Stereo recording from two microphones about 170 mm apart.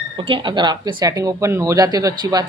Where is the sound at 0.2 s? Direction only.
30° right (ahead or behind).